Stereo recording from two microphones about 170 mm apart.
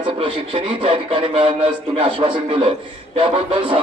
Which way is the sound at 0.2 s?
30° right (ahead or behind).